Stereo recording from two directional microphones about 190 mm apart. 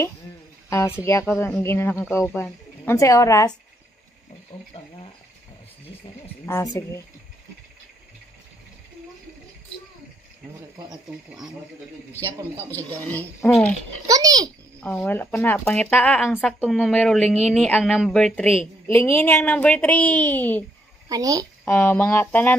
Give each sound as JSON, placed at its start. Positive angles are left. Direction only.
{"t": 0.7, "sound": "speech", "side_deg": 15}
{"t": 4.5, "sound": "speech", "side_deg": 25}
{"t": 6.4, "sound": "speech", "side_deg": 15}
{"t": 11.1, "sound": "speech", "side_deg": 0}
{"t": 12.3, "sound": "a man's voice", "side_deg": -15}
{"t": 13.1, "sound": "speech", "side_deg": 10}
{"t": 14.0, "sound": "a child's voice", "side_deg": -20}
{"t": 14.8, "sound": "speech", "side_deg": 5}
{"t": 21.1, "sound": "a child's voice", "side_deg": -20}
{"t": 21.6, "sound": "speech", "side_deg": 10}